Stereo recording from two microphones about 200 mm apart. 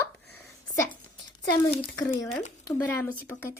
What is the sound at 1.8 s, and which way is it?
Speech, 25° left (ahead or behind).